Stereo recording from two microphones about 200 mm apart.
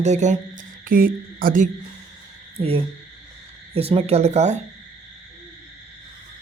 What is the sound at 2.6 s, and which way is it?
Speech, 30° right (ahead or behind).